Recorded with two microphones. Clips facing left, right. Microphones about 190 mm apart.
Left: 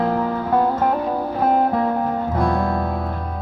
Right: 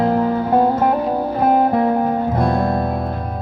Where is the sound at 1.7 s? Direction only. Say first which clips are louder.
Right 4 dB; 20° right (ahead or behind).